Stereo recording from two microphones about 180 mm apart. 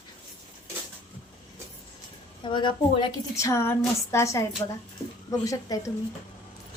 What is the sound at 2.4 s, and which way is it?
A woman's voice, 25° left (ahead or behind).